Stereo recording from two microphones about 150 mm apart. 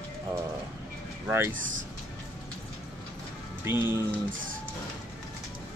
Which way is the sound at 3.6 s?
15° right (ahead or behind).